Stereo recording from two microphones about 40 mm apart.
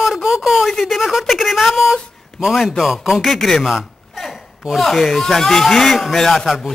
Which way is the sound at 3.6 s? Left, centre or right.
Centre.